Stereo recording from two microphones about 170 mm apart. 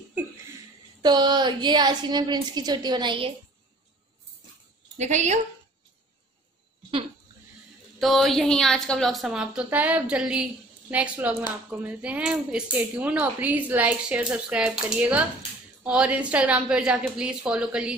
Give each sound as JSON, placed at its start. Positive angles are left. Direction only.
{"t": 1.0, "sound": "a woman's voice", "side_deg": -25}
{"t": 4.9, "sound": "a woman's voice", "side_deg": -45}
{"t": 8.0, "sound": "a woman's voice", "side_deg": 0}